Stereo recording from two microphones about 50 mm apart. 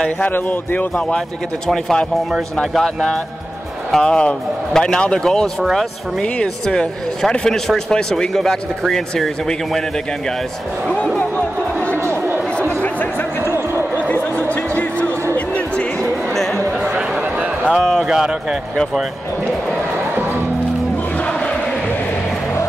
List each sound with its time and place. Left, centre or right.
0.3 s speech: left
1.7 s speech: centre
5.6 s speech: centre
7.4 s speech: centre
11.1 s music: left
12.6 s a sound: left
15.3 s music: left
16.0 s a sound: centre
17.2 s a sound: right
17.7 s speech: centre
18.0 s speech: centre
21.2 s a sound: left